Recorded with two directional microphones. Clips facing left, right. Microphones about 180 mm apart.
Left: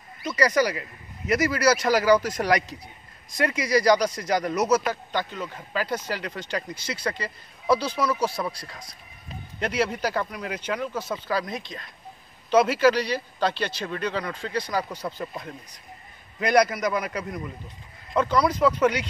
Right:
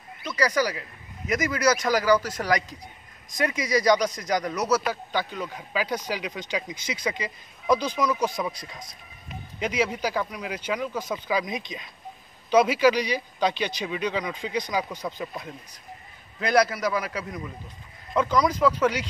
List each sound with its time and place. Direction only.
0.4 s a man's voice: 10° left (ahead or behind)
4.8 s a man's voice: 10° right (ahead or behind)
8.4 s a man's voice: 5° right (ahead or behind)
9.6 s a man's voice: 10° right (ahead or behind)
15.0 s a man's voice: centre (ahead or behind)
16.3 s a man's voice: 5° right (ahead or behind)